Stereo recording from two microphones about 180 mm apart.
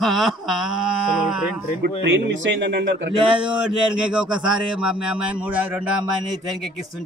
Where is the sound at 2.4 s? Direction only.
70° right (ahead or behind).